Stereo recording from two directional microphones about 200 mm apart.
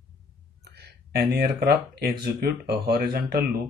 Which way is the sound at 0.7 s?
55° right (ahead or behind).